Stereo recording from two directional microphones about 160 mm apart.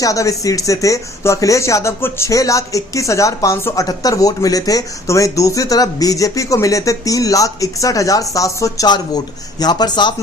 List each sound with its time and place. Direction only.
0.0 s speech: 20° left (ahead or behind)